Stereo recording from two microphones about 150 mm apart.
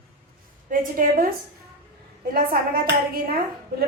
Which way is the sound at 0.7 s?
65° right (ahead or behind).